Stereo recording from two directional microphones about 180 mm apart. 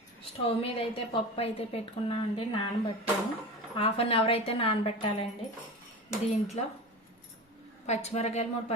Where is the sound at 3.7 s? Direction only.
30° left (ahead or behind).